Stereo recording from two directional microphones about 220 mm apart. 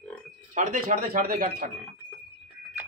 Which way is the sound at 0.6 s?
40° right (ahead or behind).